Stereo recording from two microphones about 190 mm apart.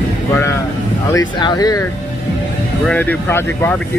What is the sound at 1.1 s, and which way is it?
Speech, 20° left (ahead or behind).